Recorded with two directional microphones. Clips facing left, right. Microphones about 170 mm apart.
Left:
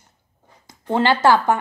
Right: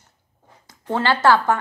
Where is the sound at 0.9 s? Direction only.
15° left (ahead or behind).